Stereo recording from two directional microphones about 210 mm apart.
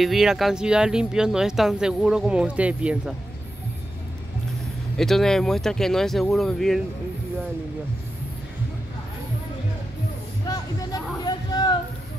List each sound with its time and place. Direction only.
0.0 s speech: centre (ahead or behind)
4.9 s speech: centre (ahead or behind)
10.5 s a sound: 20° left (ahead or behind)